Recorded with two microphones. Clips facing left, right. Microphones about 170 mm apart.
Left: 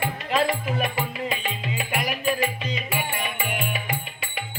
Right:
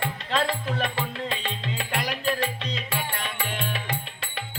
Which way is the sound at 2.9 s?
15° left (ahead or behind).